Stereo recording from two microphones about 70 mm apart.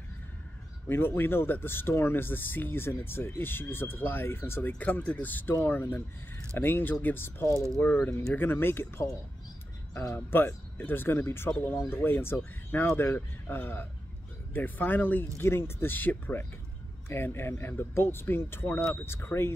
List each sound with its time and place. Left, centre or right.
0.8 s speech: left
10.1 s speech: left